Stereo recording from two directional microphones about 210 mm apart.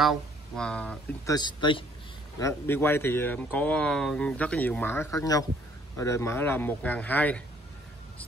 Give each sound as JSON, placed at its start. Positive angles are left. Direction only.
{"t": 0.0, "sound": "speech", "side_deg": 0}
{"t": 1.3, "sound": "a man's voice", "side_deg": 20}
{"t": 2.4, "sound": "speech", "side_deg": 10}